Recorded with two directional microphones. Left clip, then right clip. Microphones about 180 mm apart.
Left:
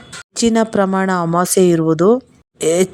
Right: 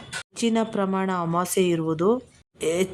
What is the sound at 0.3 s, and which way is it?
Speech, 35° left (ahead or behind).